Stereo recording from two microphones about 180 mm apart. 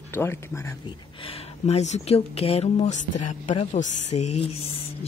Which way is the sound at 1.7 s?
35° left (ahead or behind).